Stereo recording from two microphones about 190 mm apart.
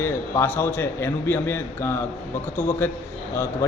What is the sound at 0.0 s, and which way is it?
A man's voice, 10° left (ahead or behind).